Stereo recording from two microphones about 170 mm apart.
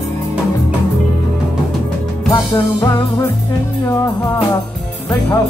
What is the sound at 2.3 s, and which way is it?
Music, 20° left (ahead or behind).